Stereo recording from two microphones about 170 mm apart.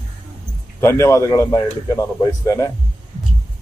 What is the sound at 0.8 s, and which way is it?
A man's voice, 15° left (ahead or behind).